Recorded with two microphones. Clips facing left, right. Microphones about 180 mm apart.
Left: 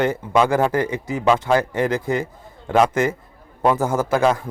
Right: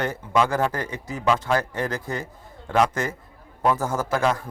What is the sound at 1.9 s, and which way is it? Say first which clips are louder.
Speech: left 8 dB; 90° left.